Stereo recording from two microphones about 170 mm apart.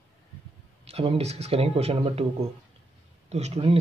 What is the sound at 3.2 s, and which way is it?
Speech, 40° right (ahead or behind).